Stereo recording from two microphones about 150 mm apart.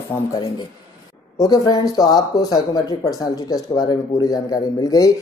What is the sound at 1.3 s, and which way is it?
A woman's voice, 25° left (ahead or behind).